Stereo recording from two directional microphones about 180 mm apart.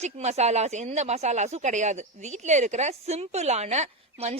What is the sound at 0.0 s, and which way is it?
Speech, 35° right (ahead or behind).